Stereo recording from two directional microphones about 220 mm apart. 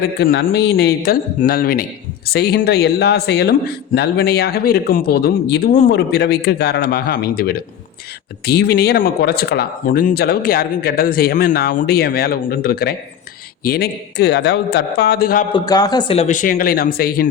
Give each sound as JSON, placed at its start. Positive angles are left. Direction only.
{"t": 0.2, "sound": "speech", "side_deg": 45}
{"t": 15.5, "sound": "speech", "side_deg": 15}